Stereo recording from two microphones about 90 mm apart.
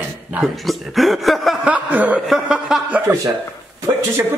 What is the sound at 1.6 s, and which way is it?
Chuckle, 15° right (ahead or behind).